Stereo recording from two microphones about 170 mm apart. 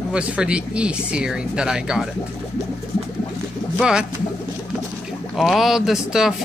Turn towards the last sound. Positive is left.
turn(degrees=-5)  # may be behind; listen again after turning